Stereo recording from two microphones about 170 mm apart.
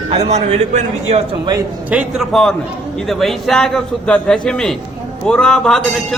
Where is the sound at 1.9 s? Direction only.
5° right (ahead or behind).